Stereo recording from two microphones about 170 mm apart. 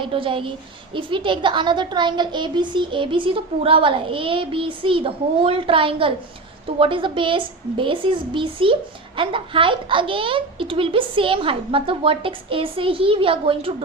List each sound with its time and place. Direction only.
0.0 s a woman's voice: 30° right (ahead or behind)